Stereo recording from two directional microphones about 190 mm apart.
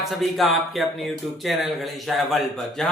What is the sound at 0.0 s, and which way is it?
Speech, centre (ahead or behind).